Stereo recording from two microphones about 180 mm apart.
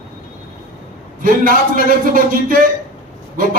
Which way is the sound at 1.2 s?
50° right (ahead or behind).